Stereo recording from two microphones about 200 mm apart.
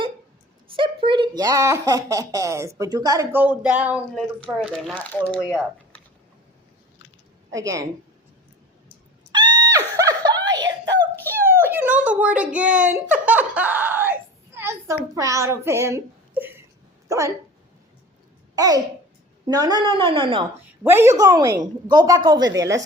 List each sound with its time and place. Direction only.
0.7 s speech: 25° right (ahead or behind); by 5.5 s 5° left (ahead or behind)
7.5 s a woman's voice: 15° right (ahead or behind)
9.3 s screaming: 20° right (ahead or behind)
11.0 s a sound: 10° right (ahead or behind)
17.1 s speech: 15° right (ahead or behind)
18.5 s a child's voice: 20° right (ahead or behind)
20.8 s a woman's voice: 10° right (ahead or behind)